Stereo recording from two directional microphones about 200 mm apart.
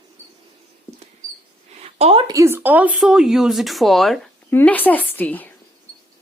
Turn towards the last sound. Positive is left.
turn(degrees=10)  # may be behind; listen again after turning